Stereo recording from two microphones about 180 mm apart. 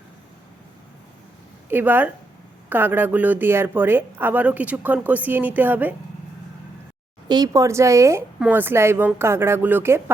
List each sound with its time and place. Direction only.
1.7 s speech: 10° right (ahead or behind)
7.3 s speech: 20° right (ahead or behind)